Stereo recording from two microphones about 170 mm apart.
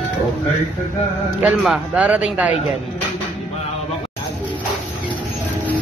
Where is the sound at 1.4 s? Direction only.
5° right (ahead or behind).